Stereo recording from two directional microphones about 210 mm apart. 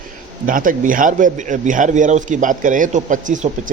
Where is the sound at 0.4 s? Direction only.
40° right (ahead or behind).